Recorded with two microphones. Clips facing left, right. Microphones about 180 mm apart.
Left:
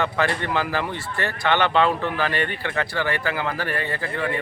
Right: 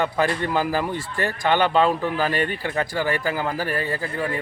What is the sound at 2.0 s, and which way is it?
Speech, 10° right (ahead or behind).